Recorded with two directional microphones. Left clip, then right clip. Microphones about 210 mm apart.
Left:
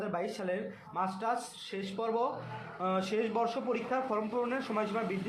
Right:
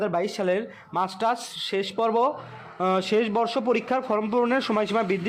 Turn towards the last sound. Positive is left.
turn(degrees=-45)  # may be behind; listen again after turning